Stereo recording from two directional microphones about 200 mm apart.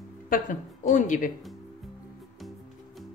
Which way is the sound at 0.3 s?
40° left (ahead or behind).